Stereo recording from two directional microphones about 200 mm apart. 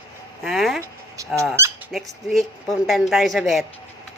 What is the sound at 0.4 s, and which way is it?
Speech, centre (ahead or behind).